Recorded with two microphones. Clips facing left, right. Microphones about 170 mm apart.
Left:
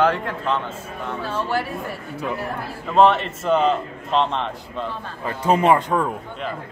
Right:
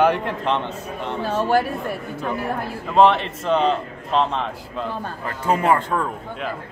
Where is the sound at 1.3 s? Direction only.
45° right (ahead or behind).